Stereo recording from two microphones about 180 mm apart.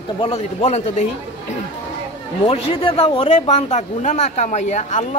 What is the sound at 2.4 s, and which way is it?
Speech, 30° left (ahead or behind).